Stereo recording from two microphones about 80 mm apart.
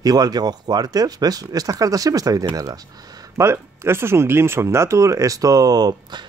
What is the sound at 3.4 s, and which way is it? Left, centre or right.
Speech, right.